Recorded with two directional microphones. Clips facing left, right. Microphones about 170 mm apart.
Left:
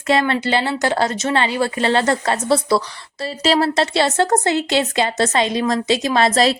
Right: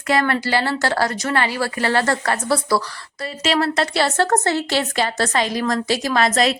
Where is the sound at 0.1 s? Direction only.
25° left (ahead or behind).